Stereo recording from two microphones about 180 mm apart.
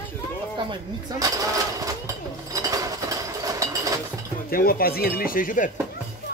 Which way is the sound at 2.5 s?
20° right (ahead or behind).